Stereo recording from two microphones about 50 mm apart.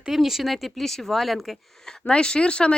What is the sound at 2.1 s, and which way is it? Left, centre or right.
Speech, centre.